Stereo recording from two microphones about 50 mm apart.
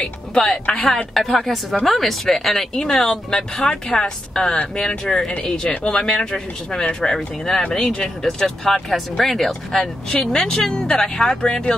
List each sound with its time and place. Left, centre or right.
0.0 s a woman's voice: centre